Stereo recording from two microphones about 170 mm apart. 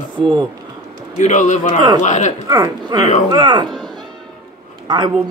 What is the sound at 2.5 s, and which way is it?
Speech, 20° right (ahead or behind).